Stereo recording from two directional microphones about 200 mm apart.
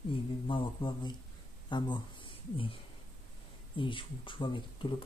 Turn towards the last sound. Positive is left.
turn(degrees=25)  # may be behind; listen again after turning